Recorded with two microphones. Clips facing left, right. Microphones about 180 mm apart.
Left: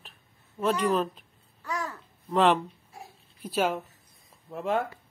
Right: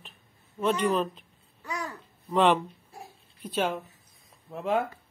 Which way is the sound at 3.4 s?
5° left (ahead or behind).